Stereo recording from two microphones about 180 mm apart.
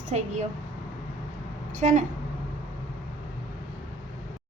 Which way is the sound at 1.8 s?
40° right (ahead or behind).